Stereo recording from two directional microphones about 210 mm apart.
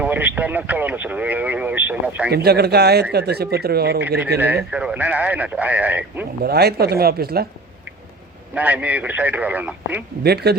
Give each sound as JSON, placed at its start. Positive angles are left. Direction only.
{"t": 0.0, "sound": "speech", "side_deg": -10}
{"t": 2.3, "sound": "speech", "side_deg": -50}
{"t": 4.4, "sound": "speech", "side_deg": -10}
{"t": 6.4, "sound": "speech", "side_deg": -50}
{"t": 8.5, "sound": "speech", "side_deg": -5}
{"t": 10.2, "sound": "speech", "side_deg": -50}